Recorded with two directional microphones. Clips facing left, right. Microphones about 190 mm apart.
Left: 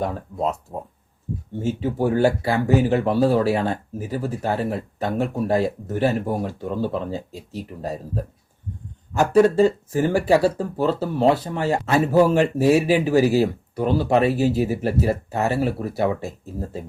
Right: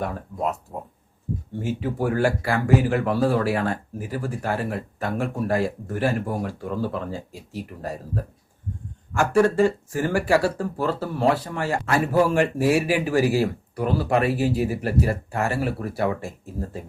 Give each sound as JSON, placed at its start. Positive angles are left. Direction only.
{"t": 0.0, "sound": "speech", "side_deg": 25}
{"t": 1.5, "sound": "speech", "side_deg": 25}